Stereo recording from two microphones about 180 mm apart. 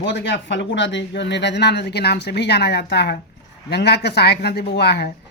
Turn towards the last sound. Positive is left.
turn(degrees=65)  # may be behind; listen again after turning